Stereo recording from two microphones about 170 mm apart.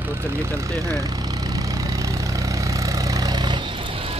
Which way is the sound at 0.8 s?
20° right (ahead or behind).